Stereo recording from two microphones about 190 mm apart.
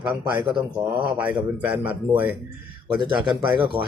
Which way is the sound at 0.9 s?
5° right (ahead or behind).